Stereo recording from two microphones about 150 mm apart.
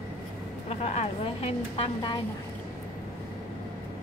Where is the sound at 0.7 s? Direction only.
45° left (ahead or behind).